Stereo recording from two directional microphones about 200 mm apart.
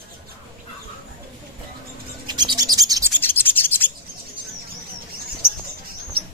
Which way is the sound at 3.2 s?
10° left (ahead or behind).